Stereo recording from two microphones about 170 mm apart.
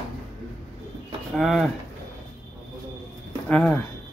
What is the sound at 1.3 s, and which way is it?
Speech, centre (ahead or behind).